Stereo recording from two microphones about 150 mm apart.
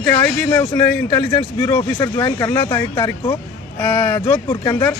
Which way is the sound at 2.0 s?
20° left (ahead or behind).